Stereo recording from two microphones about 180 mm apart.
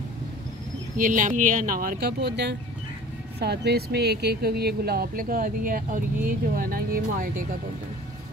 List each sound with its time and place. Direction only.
0.9 s speech: 45° right (ahead or behind)